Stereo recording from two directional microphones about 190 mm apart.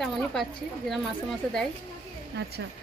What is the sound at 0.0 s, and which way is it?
A woman's voice, centre (ahead or behind).